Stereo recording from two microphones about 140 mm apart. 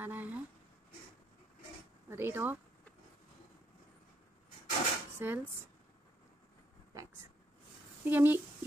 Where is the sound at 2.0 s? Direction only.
15° right (ahead or behind).